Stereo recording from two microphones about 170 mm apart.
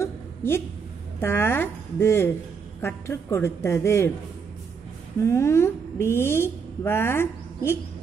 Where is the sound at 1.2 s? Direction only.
15° left (ahead or behind).